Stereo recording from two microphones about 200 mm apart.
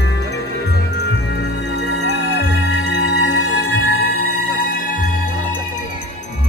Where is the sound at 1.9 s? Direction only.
60° left (ahead or behind).